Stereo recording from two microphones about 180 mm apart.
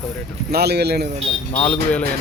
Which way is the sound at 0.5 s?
65° right (ahead or behind).